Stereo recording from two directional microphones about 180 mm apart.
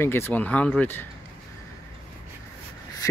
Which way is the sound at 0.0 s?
10° left (ahead or behind).